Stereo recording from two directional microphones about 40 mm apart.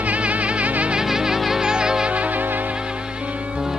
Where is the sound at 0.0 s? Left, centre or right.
Right.